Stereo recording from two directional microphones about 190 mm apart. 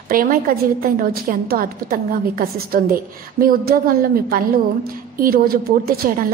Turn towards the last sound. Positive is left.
turn(degrees=-50)  # may be behind; listen again after turning